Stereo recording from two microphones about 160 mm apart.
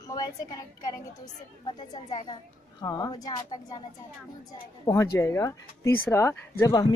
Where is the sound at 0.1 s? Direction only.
25° left (ahead or behind).